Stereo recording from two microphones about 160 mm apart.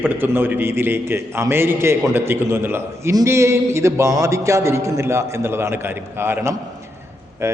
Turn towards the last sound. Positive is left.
turn(degrees=-15)  # may be behind; listen again after turning